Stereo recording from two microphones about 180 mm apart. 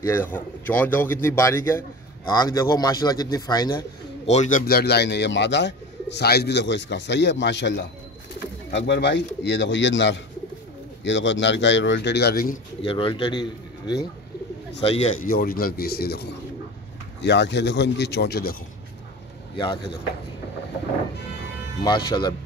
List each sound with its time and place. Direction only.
0.0 s a man's voice: 10° left (ahead or behind)
4.3 s speech: 45° left (ahead or behind)
12.8 s a man's voice: 30° left (ahead or behind)
15.2 s speech: 55° left (ahead or behind)
17.2 s speech: 75° left (ahead or behind)
19.5 s speech: 25° left (ahead or behind)
21.8 s speech: 25° left (ahead or behind)